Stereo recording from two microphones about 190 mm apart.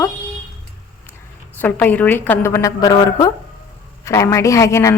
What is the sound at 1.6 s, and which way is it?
A woman's voice, 10° left (ahead or behind).